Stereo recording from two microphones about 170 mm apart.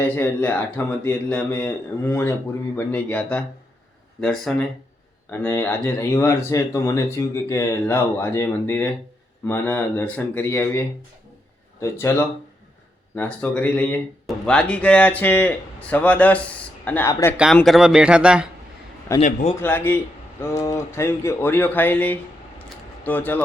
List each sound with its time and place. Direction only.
0.0 s speech: 10° left (ahead or behind)
17.3 s speech: 5° right (ahead or behind)
19.2 s a man's voice: 40° left (ahead or behind)
19.6 s speech: 10° left (ahead or behind)